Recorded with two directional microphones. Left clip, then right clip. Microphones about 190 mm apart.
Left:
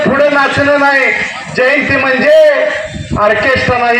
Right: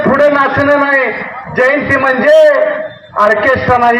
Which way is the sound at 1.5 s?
35° left (ahead or behind).